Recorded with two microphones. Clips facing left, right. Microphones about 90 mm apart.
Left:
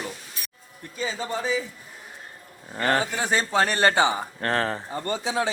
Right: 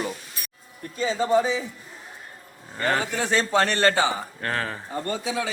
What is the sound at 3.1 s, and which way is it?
Speech, 10° left (ahead or behind).